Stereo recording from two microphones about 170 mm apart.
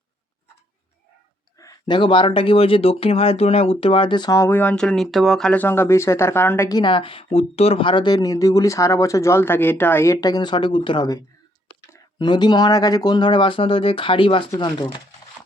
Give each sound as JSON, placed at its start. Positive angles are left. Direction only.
{"t": 1.5, "sound": "speech", "side_deg": 25}